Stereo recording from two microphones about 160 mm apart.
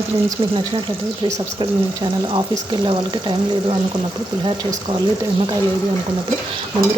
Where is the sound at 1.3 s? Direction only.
25° right (ahead or behind).